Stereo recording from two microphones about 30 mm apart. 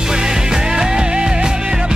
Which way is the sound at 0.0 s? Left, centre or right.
Right.